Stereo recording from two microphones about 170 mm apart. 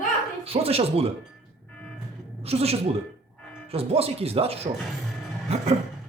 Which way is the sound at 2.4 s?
35° right (ahead or behind).